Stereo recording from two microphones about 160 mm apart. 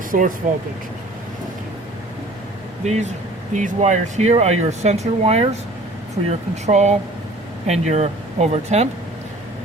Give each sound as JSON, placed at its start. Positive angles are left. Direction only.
{"t": 0.1, "sound": "speech", "side_deg": -60}
{"t": 2.8, "sound": "speech", "side_deg": -45}